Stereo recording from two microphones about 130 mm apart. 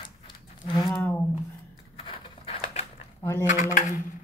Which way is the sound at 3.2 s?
25° left (ahead or behind).